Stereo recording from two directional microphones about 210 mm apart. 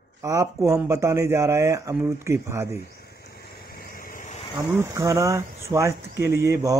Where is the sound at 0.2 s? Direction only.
15° right (ahead or behind).